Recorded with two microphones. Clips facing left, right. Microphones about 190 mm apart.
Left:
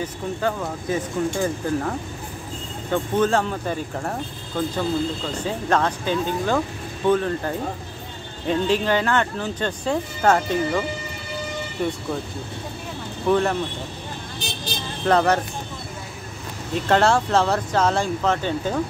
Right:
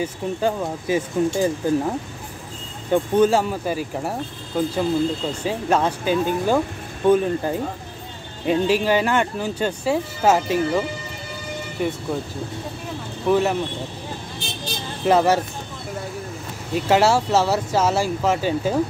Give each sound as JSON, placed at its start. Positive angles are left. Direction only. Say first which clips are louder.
{"t": 0.0, "sound": "speech", "louder": "right 2 dB", "side_deg": -15}
{"t": 11.8, "sound": "speech", "louder": "right 1 dB", "side_deg": -5}
{"t": 13.3, "sound": "speech", "louder": "right 1 dB", "side_deg": -5}
{"t": 15.0, "sound": "speech", "louder": "right 2 dB", "side_deg": -5}
{"t": 16.7, "sound": "speech", "louder": "right 1 dB", "side_deg": -5}